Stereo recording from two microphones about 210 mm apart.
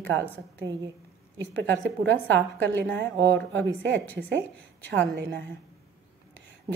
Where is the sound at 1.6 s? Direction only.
55° right (ahead or behind).